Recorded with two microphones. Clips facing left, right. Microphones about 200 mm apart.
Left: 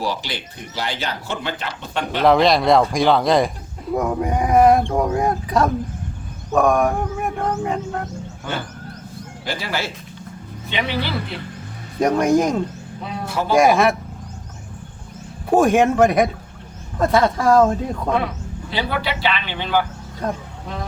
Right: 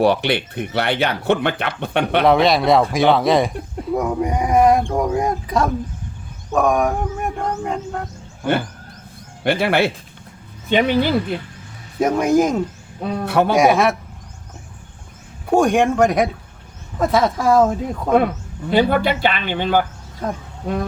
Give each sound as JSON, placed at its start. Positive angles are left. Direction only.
{"t": 0.0, "sound": "speech", "side_deg": -60}
{"t": 2.2, "sound": "speech", "side_deg": 0}
{"t": 6.5, "sound": "a sound", "side_deg": 0}
{"t": 9.4, "sound": "speech", "side_deg": -65}
{"t": 10.7, "sound": "speech", "side_deg": -50}
{"t": 11.9, "sound": "speech", "side_deg": -5}
{"t": 13.1, "sound": "speech", "side_deg": -60}
{"t": 13.6, "sound": "speech", "side_deg": 0}
{"t": 15.4, "sound": "speech", "side_deg": 0}
{"t": 18.7, "sound": "speech", "side_deg": -50}
{"t": 20.2, "sound": "speech", "side_deg": -5}